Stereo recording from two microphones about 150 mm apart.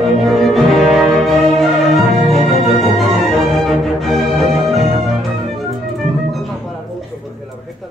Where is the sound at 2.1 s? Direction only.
50° right (ahead or behind).